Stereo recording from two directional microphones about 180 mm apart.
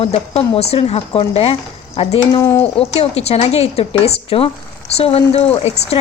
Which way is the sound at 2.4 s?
15° left (ahead or behind).